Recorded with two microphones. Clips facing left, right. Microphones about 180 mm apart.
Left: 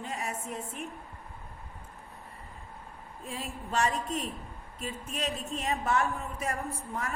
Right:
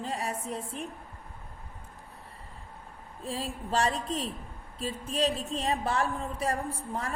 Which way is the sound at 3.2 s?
35° right (ahead or behind).